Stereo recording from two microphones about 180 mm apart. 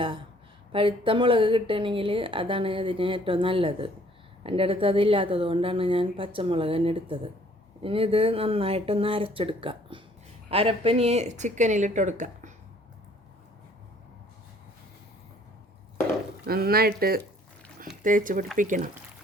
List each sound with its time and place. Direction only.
0.7 s a woman's voice: 30° right (ahead or behind)
16.5 s speech: 55° right (ahead or behind)